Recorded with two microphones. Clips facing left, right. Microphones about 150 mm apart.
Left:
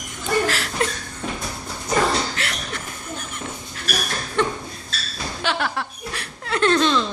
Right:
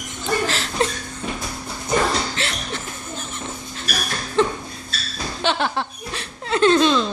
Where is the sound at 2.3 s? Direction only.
25° right (ahead or behind).